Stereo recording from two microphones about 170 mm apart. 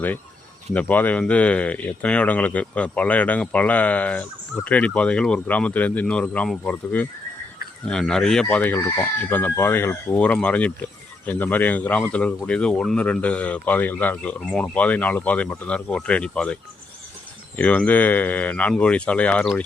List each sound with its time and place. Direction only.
0.7 s speech: 10° left (ahead or behind)
17.6 s speech: 10° left (ahead or behind)